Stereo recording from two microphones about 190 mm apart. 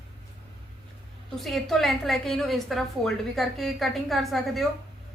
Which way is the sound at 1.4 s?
Centre (ahead or behind).